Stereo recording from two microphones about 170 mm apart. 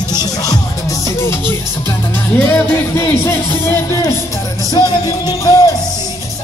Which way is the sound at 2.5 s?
15° left (ahead or behind).